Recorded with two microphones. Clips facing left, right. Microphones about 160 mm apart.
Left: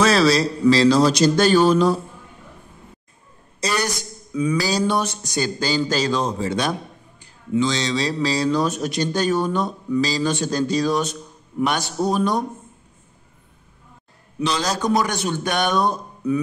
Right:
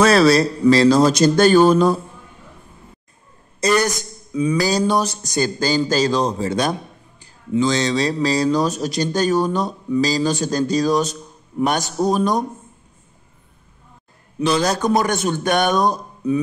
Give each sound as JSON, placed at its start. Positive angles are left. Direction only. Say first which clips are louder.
{"t": 0.0, "sound": "speech", "louder": "right 3 dB", "side_deg": -55}
{"t": 3.6, "sound": "speech", "louder": "right 6 dB", "side_deg": -50}
{"t": 4.3, "sound": "a sound", "louder": "right 2 dB", "side_deg": -30}
{"t": 4.6, "sound": "speech", "louder": "right 4 dB", "side_deg": -45}
{"t": 14.4, "sound": "speech", "louder": "right 4 dB", "side_deg": -55}